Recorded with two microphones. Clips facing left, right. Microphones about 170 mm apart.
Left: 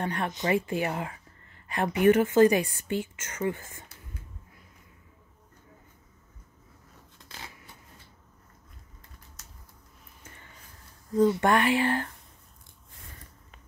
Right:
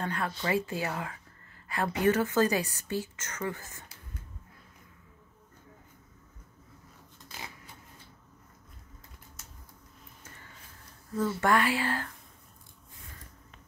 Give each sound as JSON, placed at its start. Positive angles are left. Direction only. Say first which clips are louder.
{"t": 0.0, "sound": "a woman's voice", "louder": "left 3 dB", "side_deg": 20}
{"t": 11.1, "sound": "speech", "louder": "left 4 dB", "side_deg": 20}